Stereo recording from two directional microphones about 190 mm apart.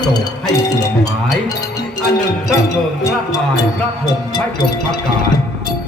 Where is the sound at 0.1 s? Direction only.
20° left (ahead or behind).